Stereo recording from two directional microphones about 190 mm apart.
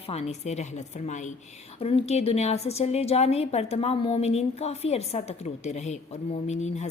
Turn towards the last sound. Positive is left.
turn(degrees=35)  # may be behind; listen again after turning